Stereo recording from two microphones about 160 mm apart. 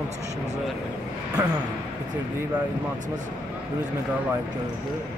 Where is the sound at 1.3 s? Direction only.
25° right (ahead or behind).